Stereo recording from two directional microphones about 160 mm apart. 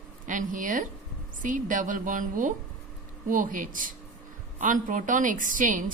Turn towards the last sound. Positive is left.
turn(degrees=-55)  # may be behind; listen again after turning